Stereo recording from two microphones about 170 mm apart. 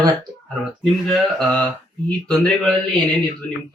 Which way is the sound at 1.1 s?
Centre (ahead or behind).